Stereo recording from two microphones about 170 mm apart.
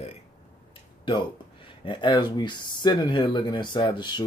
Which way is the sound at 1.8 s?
25° left (ahead or behind).